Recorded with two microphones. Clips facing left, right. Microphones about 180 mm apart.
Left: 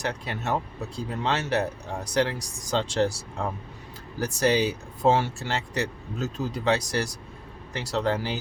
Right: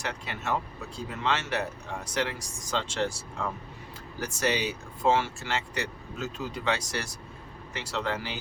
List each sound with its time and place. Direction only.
0.0 s speech: 35° left (ahead or behind)